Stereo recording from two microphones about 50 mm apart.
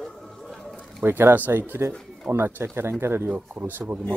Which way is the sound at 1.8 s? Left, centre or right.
Right.